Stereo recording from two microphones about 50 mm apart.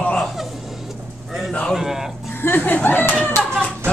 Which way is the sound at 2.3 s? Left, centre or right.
Left.